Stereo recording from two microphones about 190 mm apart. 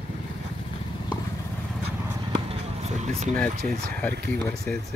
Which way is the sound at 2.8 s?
35° right (ahead or behind).